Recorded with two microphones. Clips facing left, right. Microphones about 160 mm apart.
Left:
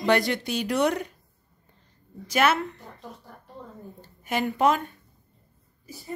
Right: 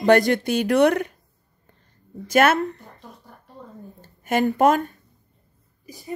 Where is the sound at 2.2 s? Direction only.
50° right (ahead or behind).